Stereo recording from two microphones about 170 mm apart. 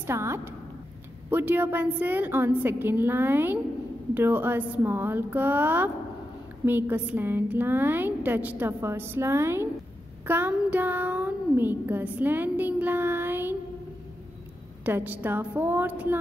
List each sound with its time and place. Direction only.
0.0 s a child's voice: 15° right (ahead or behind)
14.9 s a child's voice: 10° right (ahead or behind)